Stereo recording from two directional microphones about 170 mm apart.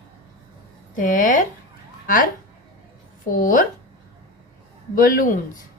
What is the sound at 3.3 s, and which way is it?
Speech, 55° left (ahead or behind).